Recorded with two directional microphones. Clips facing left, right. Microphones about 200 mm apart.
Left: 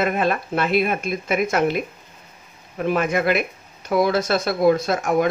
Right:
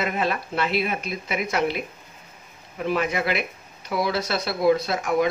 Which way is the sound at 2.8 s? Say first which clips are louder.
Left 4 dB; 50° left (ahead or behind).